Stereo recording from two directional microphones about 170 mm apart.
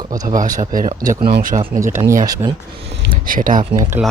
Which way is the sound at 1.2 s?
60° right (ahead or behind).